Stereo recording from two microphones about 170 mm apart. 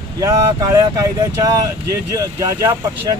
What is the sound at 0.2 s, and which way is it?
Speech, 20° right (ahead or behind).